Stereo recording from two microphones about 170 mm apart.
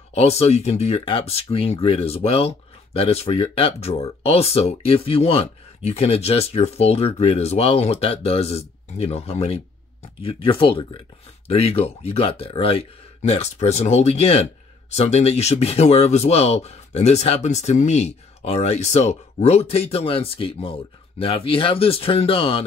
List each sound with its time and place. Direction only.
0.1 s speech: 40° left (ahead or behind)